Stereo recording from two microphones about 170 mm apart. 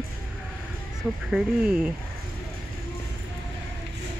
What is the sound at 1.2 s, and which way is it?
Speech, 5° right (ahead or behind).